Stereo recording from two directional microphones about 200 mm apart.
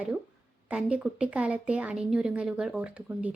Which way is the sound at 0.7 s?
5° right (ahead or behind).